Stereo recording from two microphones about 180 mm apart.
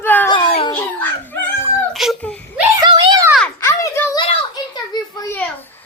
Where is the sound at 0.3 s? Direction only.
25° left (ahead or behind).